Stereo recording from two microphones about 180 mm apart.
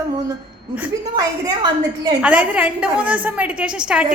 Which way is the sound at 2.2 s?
5° right (ahead or behind).